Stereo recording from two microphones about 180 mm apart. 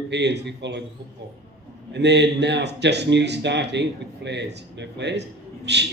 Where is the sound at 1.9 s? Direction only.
75° right (ahead or behind).